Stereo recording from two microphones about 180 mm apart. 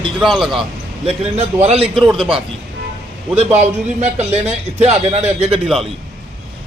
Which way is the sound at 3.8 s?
40° right (ahead or behind).